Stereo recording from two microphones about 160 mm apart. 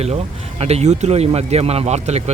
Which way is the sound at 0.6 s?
45° right (ahead or behind).